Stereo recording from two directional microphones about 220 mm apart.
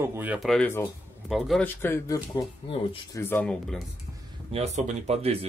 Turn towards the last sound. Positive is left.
turn(degrees=-25)  # may be behind; listen again after turning